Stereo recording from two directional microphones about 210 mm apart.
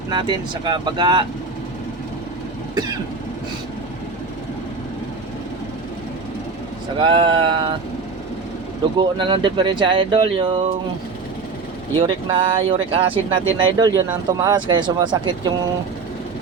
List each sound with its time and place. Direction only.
0.1 s speech: 20° right (ahead or behind)
7.0 s speech: 25° right (ahead or behind)
9.0 s speech: 25° right (ahead or behind)
11.9 s speech: 25° right (ahead or behind)